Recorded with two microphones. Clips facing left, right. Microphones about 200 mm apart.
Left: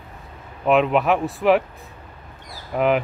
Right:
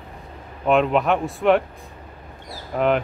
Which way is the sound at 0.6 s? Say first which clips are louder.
Left 1 dB; centre (ahead or behind).